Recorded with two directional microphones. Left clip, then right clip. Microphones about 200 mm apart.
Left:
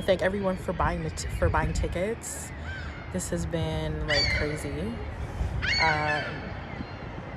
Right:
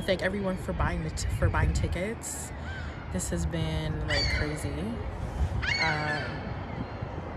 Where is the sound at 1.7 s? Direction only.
20° left (ahead or behind).